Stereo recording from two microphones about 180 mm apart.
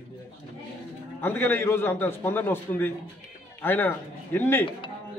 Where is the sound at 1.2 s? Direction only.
10° left (ahead or behind).